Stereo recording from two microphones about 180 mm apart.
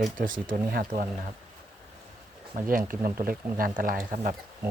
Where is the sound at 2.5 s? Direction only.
50° right (ahead or behind).